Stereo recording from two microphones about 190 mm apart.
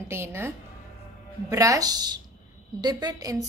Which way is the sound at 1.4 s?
15° right (ahead or behind).